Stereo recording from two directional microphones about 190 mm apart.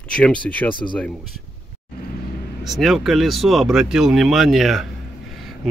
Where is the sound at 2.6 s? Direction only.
Centre (ahead or behind).